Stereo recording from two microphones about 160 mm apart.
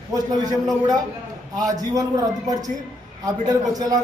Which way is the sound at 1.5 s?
20° right (ahead or behind).